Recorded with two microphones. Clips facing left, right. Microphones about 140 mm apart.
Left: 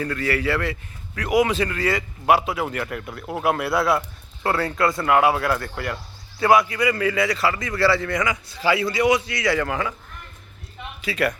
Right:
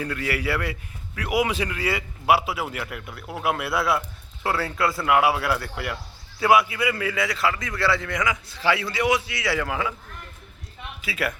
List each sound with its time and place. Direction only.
0.0 s a man's voice: 10° right (ahead or behind)
11.0 s a man's voice: 5° right (ahead or behind)